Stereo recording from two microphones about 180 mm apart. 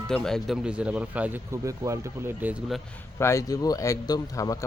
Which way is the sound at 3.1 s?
15° left (ahead or behind).